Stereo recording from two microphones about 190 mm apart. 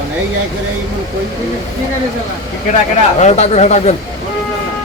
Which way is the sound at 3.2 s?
35° left (ahead or behind).